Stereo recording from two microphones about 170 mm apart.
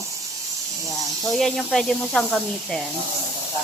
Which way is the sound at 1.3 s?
Centre (ahead or behind).